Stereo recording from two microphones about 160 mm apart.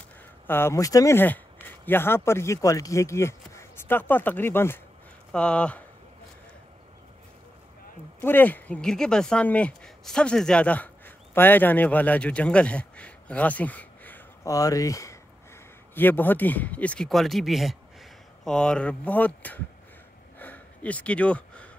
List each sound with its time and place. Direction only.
0.5 s speech: 15° left (ahead or behind)
8.2 s speech: 10° left (ahead or behind)
20.3 s a sound: 10° left (ahead or behind)